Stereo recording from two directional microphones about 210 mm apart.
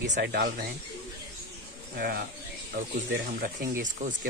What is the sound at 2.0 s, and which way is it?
Speech, 45° right (ahead or behind).